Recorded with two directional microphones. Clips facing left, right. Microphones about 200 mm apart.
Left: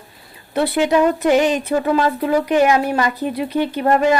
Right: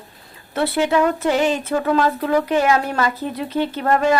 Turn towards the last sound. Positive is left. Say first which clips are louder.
# left 2 dB
turn(degrees=20)  # may be behind; listen again after turning